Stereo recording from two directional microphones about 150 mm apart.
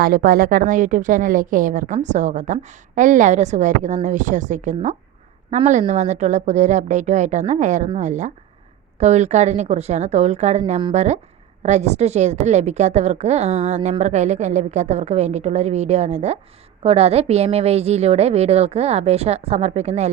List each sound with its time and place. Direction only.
0.0 s a woman's voice: 75° right (ahead or behind); by 20.1 s 50° right (ahead or behind)